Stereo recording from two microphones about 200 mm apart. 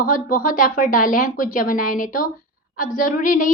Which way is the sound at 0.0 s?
45° left (ahead or behind).